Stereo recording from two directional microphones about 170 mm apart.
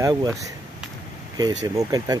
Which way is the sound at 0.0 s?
20° right (ahead or behind).